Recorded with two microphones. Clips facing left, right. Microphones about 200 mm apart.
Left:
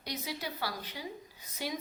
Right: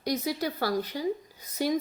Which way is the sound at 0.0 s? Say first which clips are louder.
Right 10 dB; 45° right (ahead or behind).